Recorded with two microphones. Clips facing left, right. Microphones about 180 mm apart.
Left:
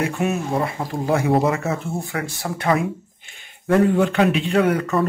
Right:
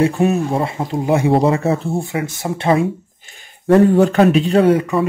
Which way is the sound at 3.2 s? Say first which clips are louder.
Right 3 dB; 40° right (ahead or behind).